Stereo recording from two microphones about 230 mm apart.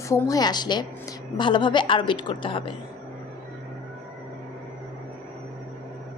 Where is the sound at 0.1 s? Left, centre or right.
Centre.